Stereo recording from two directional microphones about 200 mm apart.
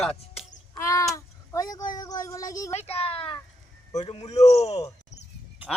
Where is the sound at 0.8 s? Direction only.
15° left (ahead or behind).